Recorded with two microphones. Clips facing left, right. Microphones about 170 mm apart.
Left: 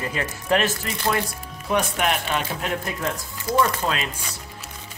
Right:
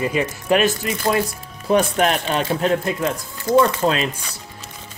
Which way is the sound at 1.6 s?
35° right (ahead or behind).